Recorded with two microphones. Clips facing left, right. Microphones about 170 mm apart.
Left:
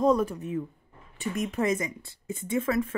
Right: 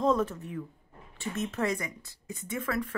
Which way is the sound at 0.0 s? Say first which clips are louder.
Left 3 dB; 10° left (ahead or behind).